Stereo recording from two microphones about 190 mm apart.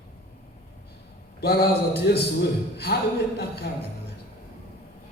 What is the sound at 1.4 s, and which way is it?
Speech, 55° left (ahead or behind).